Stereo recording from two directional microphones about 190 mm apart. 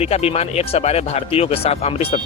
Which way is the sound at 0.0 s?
30° left (ahead or behind).